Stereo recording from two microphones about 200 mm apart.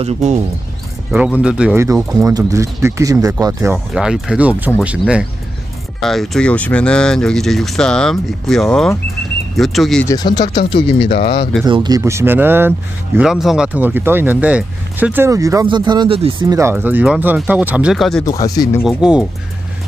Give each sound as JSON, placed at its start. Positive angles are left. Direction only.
{"t": 0.0, "sound": "speech", "side_deg": -35}
{"t": 1.4, "sound": "speech", "side_deg": -5}
{"t": 3.9, "sound": "speech", "side_deg": -5}
{"t": 10.0, "sound": "speech", "side_deg": 20}
{"t": 11.1, "sound": "speech", "side_deg": 50}
{"t": 11.6, "sound": "speech", "side_deg": -20}
{"t": 16.7, "sound": "speech", "side_deg": -5}
{"t": 18.4, "sound": "speech", "side_deg": 20}
{"t": 18.9, "sound": "speech", "side_deg": -5}